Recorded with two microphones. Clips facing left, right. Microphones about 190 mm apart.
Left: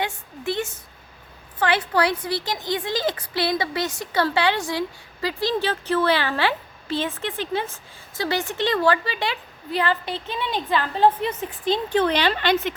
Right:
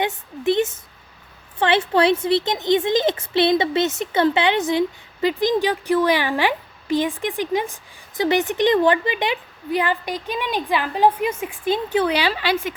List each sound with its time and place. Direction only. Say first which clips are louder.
0.0 s a woman's voice: right 6 dB; 20° right (ahead or behind)